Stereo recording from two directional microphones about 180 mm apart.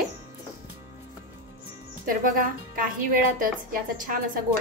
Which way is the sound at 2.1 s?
50° right (ahead or behind).